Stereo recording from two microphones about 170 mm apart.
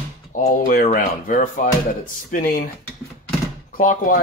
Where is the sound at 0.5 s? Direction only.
55° left (ahead or behind).